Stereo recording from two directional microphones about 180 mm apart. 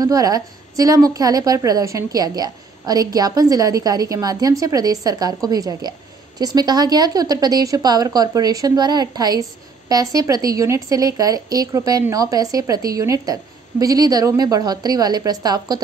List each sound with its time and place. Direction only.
0.0 s a woman's voice: 20° right (ahead or behind)